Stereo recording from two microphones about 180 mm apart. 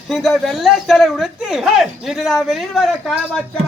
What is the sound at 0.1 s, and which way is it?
Speech, centre (ahead or behind).